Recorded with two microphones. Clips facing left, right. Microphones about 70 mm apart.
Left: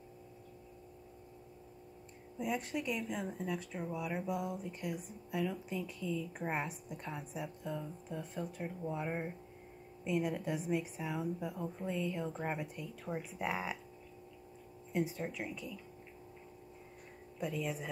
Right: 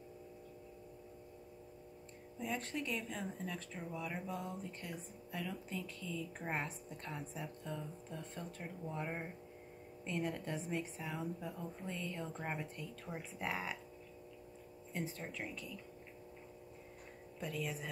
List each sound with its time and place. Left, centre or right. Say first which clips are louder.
2.3 s speech: left 4 dB; centre
14.9 s speech: left 7 dB; centre
17.4 s speech: left 4 dB; centre